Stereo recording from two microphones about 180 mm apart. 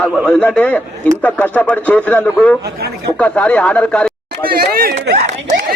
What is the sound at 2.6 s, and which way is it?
Speech, 60° right (ahead or behind).